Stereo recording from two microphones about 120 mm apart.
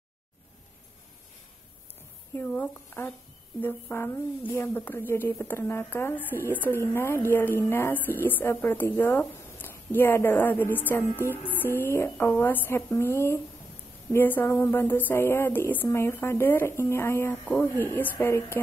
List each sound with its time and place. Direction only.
2.3 s speech: 15° left (ahead or behind)